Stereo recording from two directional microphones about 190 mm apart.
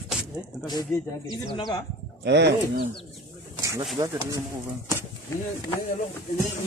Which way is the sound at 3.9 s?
15° right (ahead or behind).